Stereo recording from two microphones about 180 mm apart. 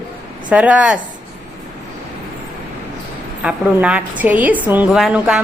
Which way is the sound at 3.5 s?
5° right (ahead or behind).